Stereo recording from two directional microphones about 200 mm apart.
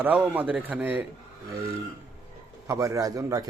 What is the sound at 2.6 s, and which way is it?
Speech, 15° right (ahead or behind).